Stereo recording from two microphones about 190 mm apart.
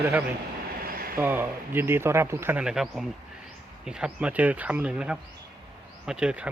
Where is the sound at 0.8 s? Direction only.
50° right (ahead or behind).